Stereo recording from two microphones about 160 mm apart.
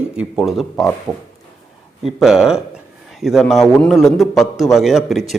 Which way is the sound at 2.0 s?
Centre (ahead or behind).